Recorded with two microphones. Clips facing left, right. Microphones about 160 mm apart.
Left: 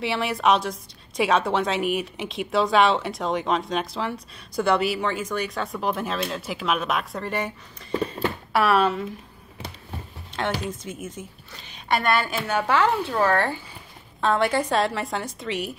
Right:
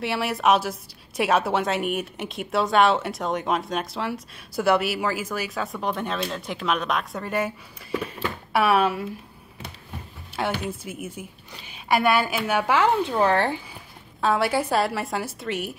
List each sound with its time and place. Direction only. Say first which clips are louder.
0.0 s a woman's voice: even; centre (ahead or behind)
7.9 s a sound: left 3 dB; 35° left (ahead or behind)
8.5 s a woman's voice: even; 10° right (ahead or behind)
10.6 s a woman's voice: even; 10° right (ahead or behind)
14.2 s a woman's voice: even; 5° right (ahead or behind)